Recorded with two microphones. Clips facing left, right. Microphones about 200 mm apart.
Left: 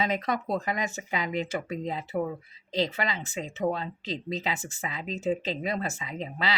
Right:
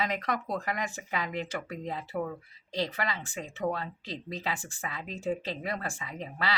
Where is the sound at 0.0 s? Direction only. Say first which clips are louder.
Left 3 dB; 20° left (ahead or behind).